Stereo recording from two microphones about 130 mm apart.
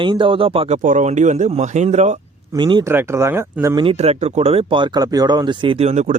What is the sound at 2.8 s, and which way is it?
Speech, 20° right (ahead or behind).